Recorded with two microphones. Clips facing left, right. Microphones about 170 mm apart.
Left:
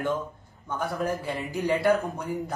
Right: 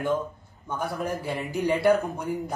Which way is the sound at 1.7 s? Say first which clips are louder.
Right 2 dB; 10° right (ahead or behind).